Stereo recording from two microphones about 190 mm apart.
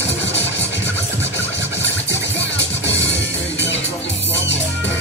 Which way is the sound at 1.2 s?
65° left (ahead or behind).